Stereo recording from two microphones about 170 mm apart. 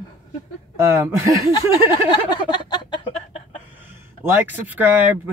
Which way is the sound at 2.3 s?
25° left (ahead or behind).